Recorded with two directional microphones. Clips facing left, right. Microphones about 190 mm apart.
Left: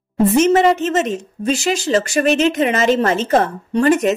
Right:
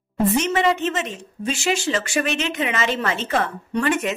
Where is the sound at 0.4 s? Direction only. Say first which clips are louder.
Left 7 dB; 45° left (ahead or behind).